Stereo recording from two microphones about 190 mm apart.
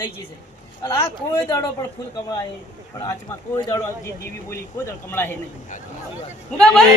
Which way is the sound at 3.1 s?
20° left (ahead or behind).